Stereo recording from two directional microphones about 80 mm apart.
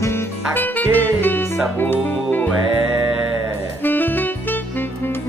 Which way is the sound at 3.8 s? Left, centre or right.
Left.